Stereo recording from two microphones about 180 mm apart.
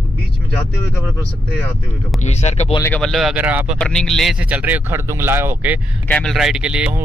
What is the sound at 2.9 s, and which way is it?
Speech, centre (ahead or behind).